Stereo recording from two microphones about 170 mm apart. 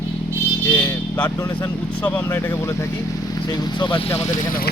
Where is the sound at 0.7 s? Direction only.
10° left (ahead or behind).